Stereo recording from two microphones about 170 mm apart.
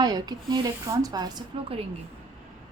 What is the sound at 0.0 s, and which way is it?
A woman's voice, 25° right (ahead or behind).